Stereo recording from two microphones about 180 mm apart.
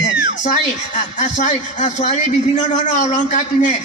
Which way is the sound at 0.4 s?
45° left (ahead or behind).